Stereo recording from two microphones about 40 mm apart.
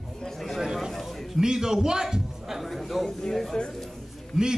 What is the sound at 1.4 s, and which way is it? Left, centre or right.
A man's voice, centre.